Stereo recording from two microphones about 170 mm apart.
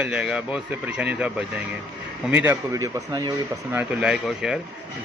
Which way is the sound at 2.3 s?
10° right (ahead or behind).